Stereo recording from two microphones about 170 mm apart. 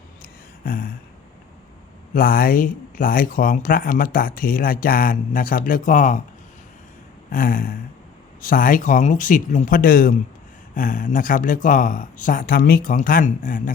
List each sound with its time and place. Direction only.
0.2 s a sound: 55° left (ahead or behind)
2.1 s speech: 55° left (ahead or behind)
7.3 s speech: 55° left (ahead or behind)